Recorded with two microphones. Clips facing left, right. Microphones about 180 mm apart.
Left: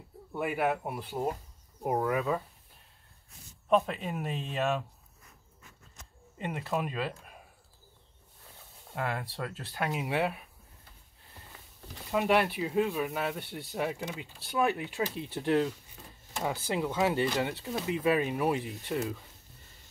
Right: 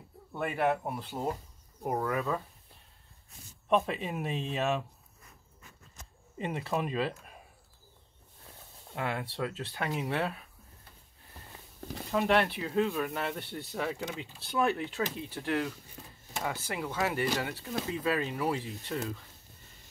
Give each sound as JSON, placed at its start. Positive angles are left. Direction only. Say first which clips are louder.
{"t": 0.3, "sound": "speech", "louder": "even", "side_deg": 5}
{"t": 3.6, "sound": "speech", "louder": "left 1 dB", "side_deg": 0}
{"t": 6.4, "sound": "speech", "louder": "even", "side_deg": 0}
{"t": 9.8, "sound": "speech", "louder": "left 2 dB", "side_deg": 10}
{"t": 12.1, "sound": "speech", "louder": "left 1 dB", "side_deg": 10}
{"t": 15.3, "sound": "speech", "louder": "left 6 dB", "side_deg": 20}